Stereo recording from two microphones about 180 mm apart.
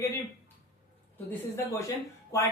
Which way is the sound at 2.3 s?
15° left (ahead or behind).